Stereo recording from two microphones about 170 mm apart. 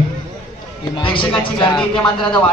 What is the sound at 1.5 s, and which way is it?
Speech, 25° left (ahead or behind).